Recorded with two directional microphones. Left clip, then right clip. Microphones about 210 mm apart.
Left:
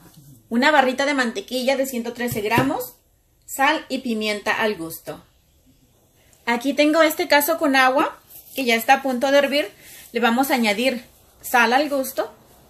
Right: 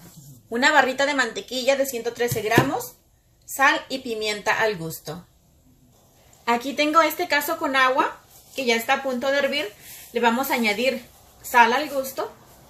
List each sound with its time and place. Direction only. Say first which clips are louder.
0.5 s speech: left 1 dB; 55° left (ahead or behind)
3.5 s speech: even; 55° left (ahead or behind)
6.4 s speech: left 3 dB; 50° left (ahead or behind)